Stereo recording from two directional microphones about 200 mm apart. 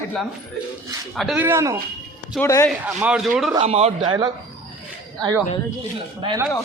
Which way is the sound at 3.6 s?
30° right (ahead or behind).